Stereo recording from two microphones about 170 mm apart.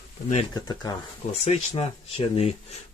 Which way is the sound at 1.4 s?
35° left (ahead or behind).